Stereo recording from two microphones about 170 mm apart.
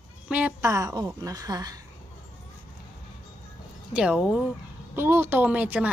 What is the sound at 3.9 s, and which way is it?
A woman's voice, 5° right (ahead or behind).